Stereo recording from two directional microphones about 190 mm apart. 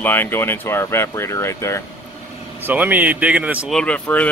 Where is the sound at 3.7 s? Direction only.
5° left (ahead or behind).